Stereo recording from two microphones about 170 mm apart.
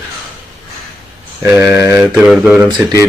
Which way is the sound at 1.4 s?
15° right (ahead or behind).